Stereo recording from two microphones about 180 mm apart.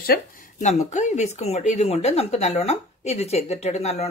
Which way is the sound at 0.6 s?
40° left (ahead or behind).